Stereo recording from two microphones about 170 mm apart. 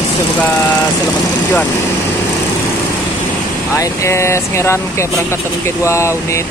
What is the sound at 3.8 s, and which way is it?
Speech, 15° left (ahead or behind).